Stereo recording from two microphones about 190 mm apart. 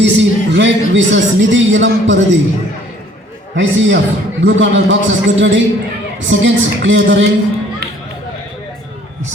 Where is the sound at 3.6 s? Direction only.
75° right (ahead or behind).